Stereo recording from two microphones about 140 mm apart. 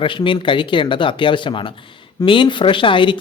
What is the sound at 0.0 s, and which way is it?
Speech, 35° left (ahead or behind).